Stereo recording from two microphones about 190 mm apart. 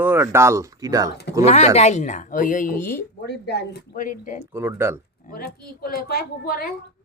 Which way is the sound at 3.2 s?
60° left (ahead or behind).